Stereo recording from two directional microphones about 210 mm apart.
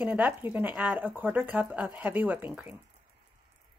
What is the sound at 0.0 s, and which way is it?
A woman's voice, 10° right (ahead or behind).